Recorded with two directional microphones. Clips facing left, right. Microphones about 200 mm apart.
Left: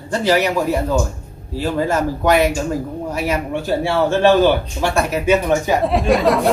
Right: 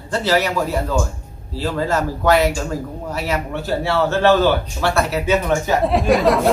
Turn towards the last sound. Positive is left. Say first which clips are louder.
# even
turn(degrees=0)  # may be behind; listen again after turning